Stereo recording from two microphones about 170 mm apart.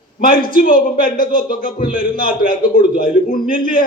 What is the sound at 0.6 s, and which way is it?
A man's voice, 55° left (ahead or behind).